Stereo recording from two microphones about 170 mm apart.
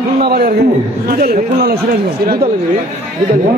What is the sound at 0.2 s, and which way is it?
A man's voice, 65° right (ahead or behind).